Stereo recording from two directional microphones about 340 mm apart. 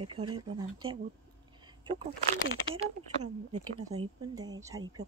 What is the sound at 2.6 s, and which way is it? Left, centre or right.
Speech, left.